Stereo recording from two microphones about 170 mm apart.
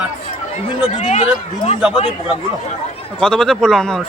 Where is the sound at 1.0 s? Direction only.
40° left (ahead or behind).